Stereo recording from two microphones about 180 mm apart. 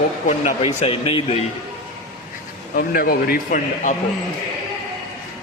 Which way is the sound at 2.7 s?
55° left (ahead or behind).